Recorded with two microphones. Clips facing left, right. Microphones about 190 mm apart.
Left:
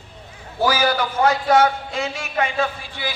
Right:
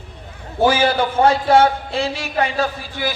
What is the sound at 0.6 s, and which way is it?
A man's voice, 25° right (ahead or behind).